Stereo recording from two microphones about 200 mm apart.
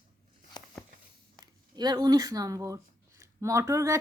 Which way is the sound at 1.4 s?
20° right (ahead or behind).